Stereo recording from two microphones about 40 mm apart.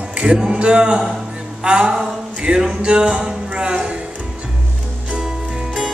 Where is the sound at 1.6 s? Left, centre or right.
Right.